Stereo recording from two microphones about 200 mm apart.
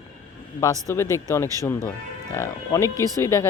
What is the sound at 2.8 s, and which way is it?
Speech, 15° right (ahead or behind).